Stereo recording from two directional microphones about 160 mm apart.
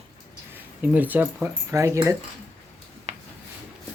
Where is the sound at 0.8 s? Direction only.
10° right (ahead or behind).